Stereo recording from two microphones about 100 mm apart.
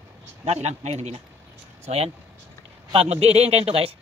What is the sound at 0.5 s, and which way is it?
Speech, 90° right.